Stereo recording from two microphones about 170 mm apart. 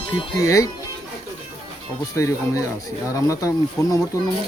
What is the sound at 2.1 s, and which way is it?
Speech, 15° left (ahead or behind).